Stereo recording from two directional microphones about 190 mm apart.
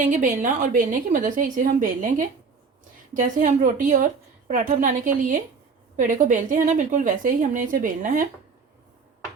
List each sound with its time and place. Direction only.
0.0 s a woman's voice: 40° right (ahead or behind)